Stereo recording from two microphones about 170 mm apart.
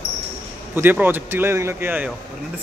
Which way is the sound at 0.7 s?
10° right (ahead or behind).